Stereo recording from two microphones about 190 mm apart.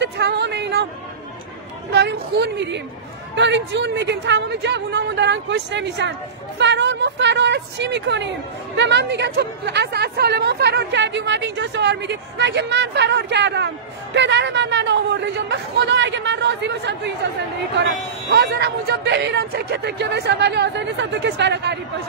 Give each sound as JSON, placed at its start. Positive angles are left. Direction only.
{"t": 0.0, "sound": "a sound", "side_deg": -65}
{"t": 1.9, "sound": "a woman's voice", "side_deg": -60}
{"t": 18.3, "sound": "speech", "side_deg": -55}